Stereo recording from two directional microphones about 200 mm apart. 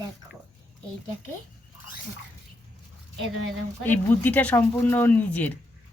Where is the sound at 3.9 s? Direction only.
10° left (ahead or behind).